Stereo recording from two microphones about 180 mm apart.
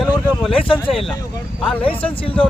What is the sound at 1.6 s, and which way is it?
Speech, 5° left (ahead or behind).